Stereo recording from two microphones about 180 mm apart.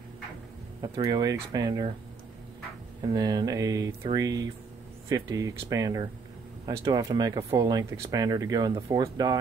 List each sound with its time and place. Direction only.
0.9 s speech: 20° right (ahead or behind)
3.1 s speech: 20° right (ahead or behind)